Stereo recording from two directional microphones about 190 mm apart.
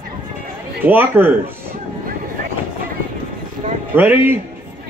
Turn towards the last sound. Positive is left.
turn(degrees=-10)  # may be behind; listen again after turning